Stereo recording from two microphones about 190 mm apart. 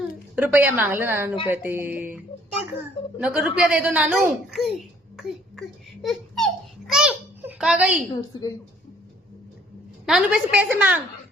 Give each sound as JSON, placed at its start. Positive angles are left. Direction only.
{"t": 0.3, "sound": "a woman's voice", "side_deg": -10}
{"t": 3.2, "sound": "a sound", "side_deg": -5}
{"t": 8.1, "sound": "a woman's voice", "side_deg": 20}
{"t": 10.1, "sound": "a woman's voice", "side_deg": -5}